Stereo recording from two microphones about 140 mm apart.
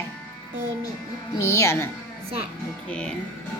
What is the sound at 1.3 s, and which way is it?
Speech, 20° left (ahead or behind).